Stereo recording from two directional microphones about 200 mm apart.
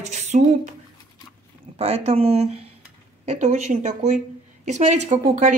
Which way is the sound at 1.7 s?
30° right (ahead or behind).